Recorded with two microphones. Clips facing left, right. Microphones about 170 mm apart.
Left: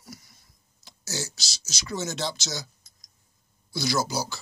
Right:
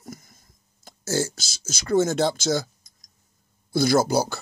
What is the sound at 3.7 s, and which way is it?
Speech, 55° right (ahead or behind).